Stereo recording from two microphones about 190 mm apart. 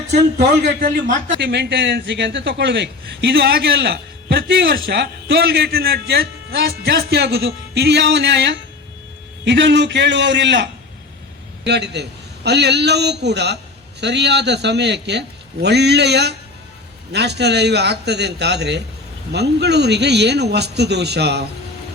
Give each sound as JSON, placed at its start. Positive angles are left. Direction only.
{"t": 0.1, "sound": "a man's voice", "side_deg": -60}
{"t": 1.4, "sound": "a man's voice", "side_deg": -60}